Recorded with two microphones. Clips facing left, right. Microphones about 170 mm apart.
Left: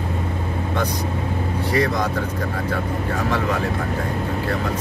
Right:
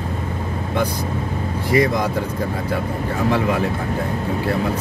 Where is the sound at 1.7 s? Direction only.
10° right (ahead or behind).